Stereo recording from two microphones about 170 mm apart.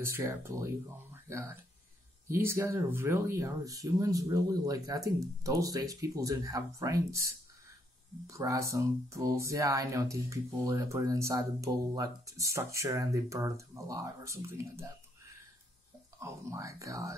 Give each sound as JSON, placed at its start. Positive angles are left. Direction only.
{"t": 0.0, "sound": "speech", "side_deg": -15}
{"t": 16.2, "sound": "speech", "side_deg": -15}